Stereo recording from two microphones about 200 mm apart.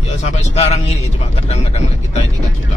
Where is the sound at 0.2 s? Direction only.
35° left (ahead or behind).